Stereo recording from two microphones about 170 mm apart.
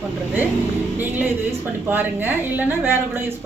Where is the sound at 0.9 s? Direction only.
10° right (ahead or behind).